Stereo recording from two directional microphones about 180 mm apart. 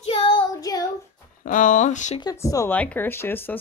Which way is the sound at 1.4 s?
45° left (ahead or behind).